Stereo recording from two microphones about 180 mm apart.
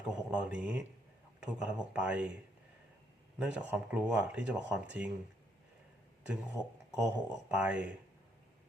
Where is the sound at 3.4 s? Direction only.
10° right (ahead or behind).